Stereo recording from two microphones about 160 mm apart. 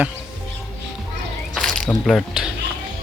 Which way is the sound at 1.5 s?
5° left (ahead or behind).